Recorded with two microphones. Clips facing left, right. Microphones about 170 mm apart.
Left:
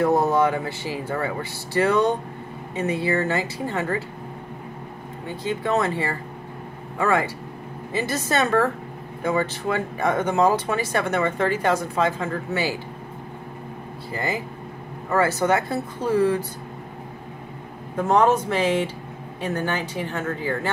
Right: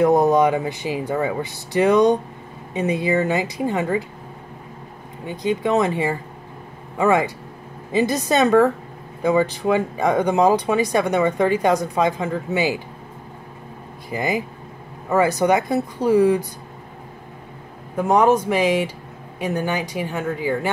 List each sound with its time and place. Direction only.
0.0 s speech: 15° right (ahead or behind)
5.2 s speech: 15° right (ahead or behind)
14.1 s speech: 15° right (ahead or behind)
17.9 s speech: 10° right (ahead or behind)